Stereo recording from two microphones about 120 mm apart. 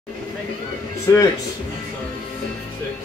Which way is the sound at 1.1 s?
30° left (ahead or behind).